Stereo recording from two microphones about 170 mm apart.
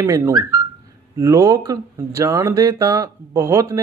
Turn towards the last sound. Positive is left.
turn(degrees=-15)  # may be behind; listen again after turning